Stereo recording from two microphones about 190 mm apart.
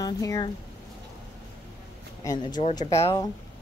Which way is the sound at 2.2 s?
20° left (ahead or behind).